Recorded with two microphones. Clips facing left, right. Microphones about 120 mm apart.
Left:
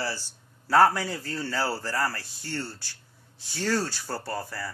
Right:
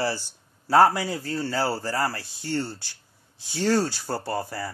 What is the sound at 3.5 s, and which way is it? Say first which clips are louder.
Speech: right 5 dB; 20° right (ahead or behind).